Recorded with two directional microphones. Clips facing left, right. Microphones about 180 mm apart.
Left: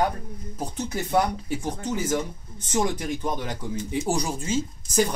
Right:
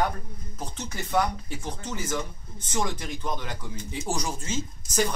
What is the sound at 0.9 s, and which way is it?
Speech, 20° left (ahead or behind).